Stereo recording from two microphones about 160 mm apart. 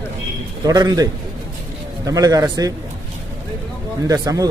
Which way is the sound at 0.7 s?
25° right (ahead or behind).